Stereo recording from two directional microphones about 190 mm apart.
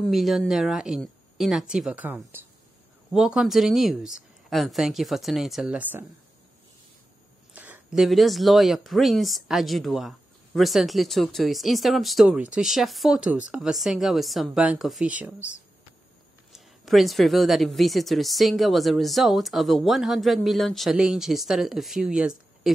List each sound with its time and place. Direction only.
0.0 s speech: centre (ahead or behind)
7.5 s speech: 10° right (ahead or behind)
16.5 s speech: centre (ahead or behind)